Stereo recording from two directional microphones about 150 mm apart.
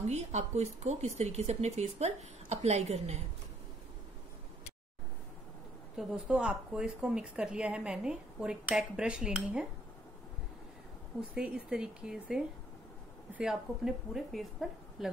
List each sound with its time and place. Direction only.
0.0 s speech: 50° right (ahead or behind)
5.9 s speech: 5° right (ahead or behind)
11.1 s speech: 5° right (ahead or behind)